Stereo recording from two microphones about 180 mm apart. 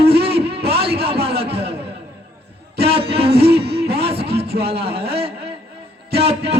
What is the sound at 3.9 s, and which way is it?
Music, 35° right (ahead or behind).